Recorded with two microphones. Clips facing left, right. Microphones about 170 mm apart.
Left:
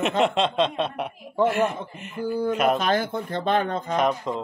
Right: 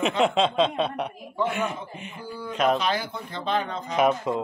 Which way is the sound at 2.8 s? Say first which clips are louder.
Left 4 dB; 50° left (ahead or behind).